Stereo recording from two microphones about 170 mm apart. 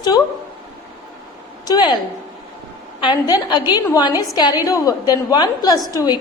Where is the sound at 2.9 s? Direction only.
25° left (ahead or behind).